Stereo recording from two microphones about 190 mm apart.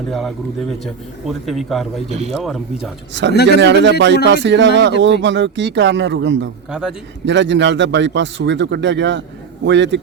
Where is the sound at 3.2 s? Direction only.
70° right (ahead or behind).